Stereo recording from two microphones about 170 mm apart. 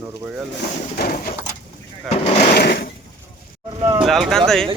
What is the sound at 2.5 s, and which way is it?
Sewing machine, 75° left (ahead or behind).